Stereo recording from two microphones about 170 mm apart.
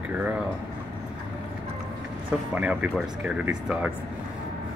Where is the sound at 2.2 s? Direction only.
10° right (ahead or behind).